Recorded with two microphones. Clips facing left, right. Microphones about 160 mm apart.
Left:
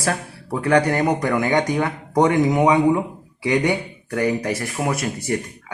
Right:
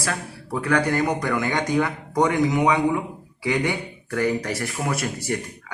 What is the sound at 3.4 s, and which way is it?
A man's voice, 20° left (ahead or behind).